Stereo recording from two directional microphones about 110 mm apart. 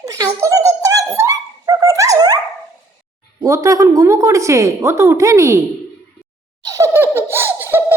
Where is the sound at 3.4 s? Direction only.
30° right (ahead or behind).